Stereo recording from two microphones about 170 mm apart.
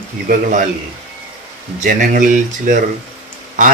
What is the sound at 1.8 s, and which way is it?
Speech, 50° right (ahead or behind).